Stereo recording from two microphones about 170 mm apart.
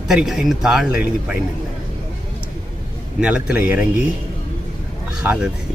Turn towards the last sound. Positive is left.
turn(degrees=-10)  # may be behind; listen again after turning